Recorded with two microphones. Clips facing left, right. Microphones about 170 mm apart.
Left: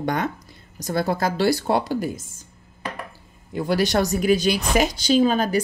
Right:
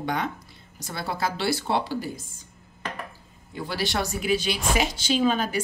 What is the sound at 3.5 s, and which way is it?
Speech, 45° left (ahead or behind).